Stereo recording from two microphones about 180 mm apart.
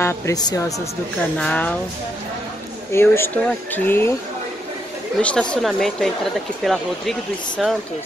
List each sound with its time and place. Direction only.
0.0 s speech: 20° left (ahead or behind)
1.4 s speech: 5° left (ahead or behind)
2.9 s speech: 15° left (ahead or behind)
5.2 s speech: 5° left (ahead or behind)